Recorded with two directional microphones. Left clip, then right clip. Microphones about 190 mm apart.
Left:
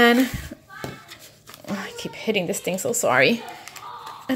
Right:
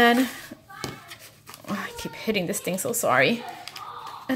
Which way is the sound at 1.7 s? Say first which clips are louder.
Left 1 dB; 10° left (ahead or behind).